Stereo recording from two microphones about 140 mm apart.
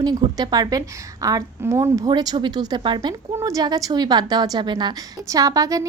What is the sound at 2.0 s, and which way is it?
A woman's voice, 30° right (ahead or behind).